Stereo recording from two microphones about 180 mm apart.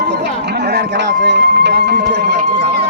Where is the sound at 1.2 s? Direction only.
70° right (ahead or behind).